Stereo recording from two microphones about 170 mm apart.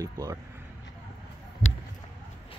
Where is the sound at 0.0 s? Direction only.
20° right (ahead or behind).